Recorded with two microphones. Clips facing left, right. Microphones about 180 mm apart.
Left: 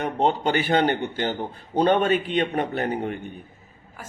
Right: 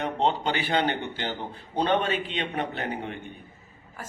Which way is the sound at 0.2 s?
50° left (ahead or behind).